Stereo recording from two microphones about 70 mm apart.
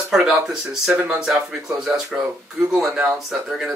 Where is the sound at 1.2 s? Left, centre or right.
Centre.